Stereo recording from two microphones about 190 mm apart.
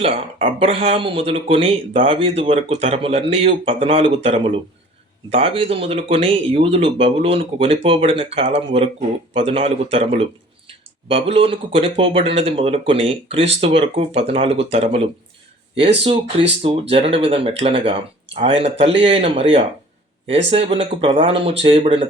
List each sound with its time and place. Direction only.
0.0 s speech: 30° right (ahead or behind)
16.9 s speech: 30° right (ahead or behind)